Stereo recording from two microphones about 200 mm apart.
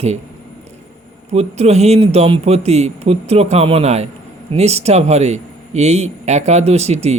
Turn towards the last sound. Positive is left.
turn(degrees=-35)  # may be behind; listen again after turning